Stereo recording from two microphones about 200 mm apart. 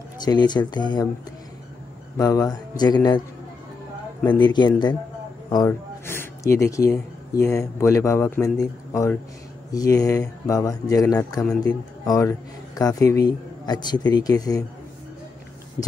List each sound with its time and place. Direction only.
0.2 s speech: 20° left (ahead or behind)
2.1 s speech: 15° left (ahead or behind)
4.3 s speech: 20° left (ahead or behind)